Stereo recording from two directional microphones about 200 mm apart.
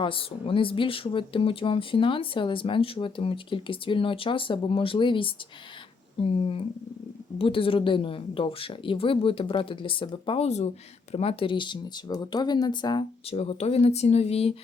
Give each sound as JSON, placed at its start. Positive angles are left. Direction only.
{"t": 0.0, "sound": "speech", "side_deg": 25}